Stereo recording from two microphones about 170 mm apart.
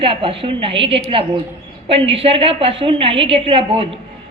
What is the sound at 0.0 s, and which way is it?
A woman's voice, 30° right (ahead or behind).